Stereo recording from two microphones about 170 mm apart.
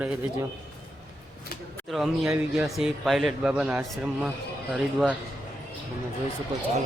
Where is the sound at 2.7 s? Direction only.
Centre (ahead or behind).